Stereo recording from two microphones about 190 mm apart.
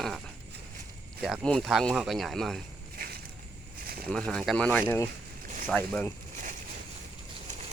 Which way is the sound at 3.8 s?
50° right (ahead or behind).